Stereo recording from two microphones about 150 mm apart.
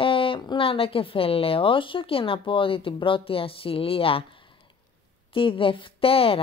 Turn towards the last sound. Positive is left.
turn(degrees=40)  # may be behind; listen again after turning